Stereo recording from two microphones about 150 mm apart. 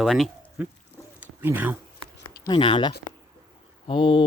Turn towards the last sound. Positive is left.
turn(degrees=35)  # may be behind; listen again after turning